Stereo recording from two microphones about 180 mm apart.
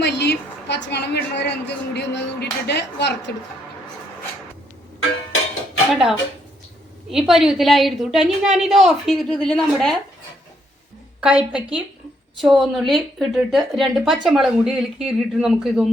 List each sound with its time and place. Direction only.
0.0 s a woman's voice: 65° left (ahead or behind)
5.9 s speech: 5° right (ahead or behind)
11.2 s speech: 5° right (ahead or behind)